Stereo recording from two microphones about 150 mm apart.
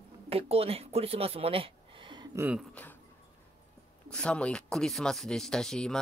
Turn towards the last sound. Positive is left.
turn(degrees=5)  # may be behind; listen again after turning